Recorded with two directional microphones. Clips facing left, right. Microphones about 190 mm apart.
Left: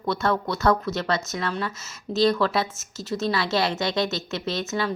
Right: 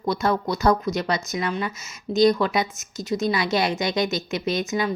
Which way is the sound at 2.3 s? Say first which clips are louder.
Right 1 dB; 15° right (ahead or behind).